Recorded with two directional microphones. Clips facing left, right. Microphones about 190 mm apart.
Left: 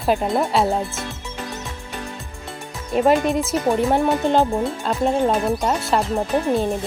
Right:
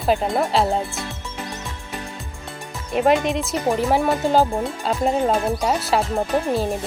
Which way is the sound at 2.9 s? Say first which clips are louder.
Left 1 dB; centre (ahead or behind).